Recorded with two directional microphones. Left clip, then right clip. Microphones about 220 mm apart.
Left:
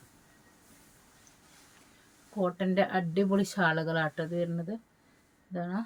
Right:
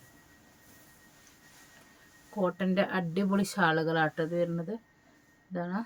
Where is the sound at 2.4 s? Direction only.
25° right (ahead or behind).